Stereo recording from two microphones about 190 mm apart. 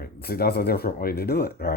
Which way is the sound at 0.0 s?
55° left (ahead or behind).